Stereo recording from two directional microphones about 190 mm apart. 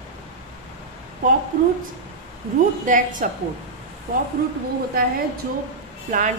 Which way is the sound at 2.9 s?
45° right (ahead or behind).